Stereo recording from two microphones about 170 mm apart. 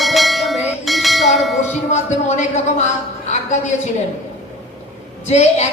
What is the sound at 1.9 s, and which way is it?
Speech, 40° left (ahead or behind).